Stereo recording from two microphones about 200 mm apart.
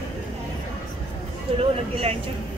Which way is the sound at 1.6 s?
30° right (ahead or behind).